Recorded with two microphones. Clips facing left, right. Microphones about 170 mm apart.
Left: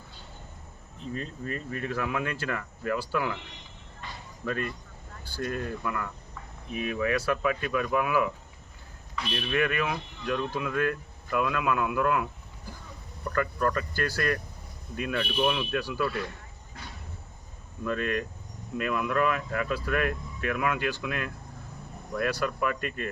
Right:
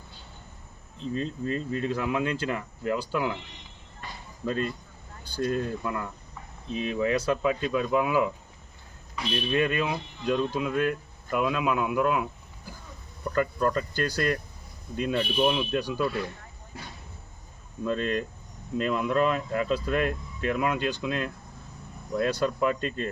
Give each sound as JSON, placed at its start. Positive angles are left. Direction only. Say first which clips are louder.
{"t": 0.9, "sound": "speech", "louder": "right 5 dB", "side_deg": -20}
{"t": 4.4, "sound": "speech", "louder": "right 3 dB", "side_deg": -25}
{"t": 9.5, "sound": "speech", "louder": "right 1 dB", "side_deg": -20}
{"t": 13.3, "sound": "speech", "louder": "right 2 dB", "side_deg": -20}
{"t": 17.8, "sound": "speech", "louder": "right 2 dB", "side_deg": -25}